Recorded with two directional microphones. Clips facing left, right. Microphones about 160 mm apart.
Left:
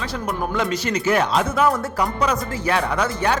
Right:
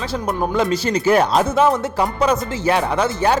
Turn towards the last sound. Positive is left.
turn(degrees=-30)  # may be behind; listen again after turning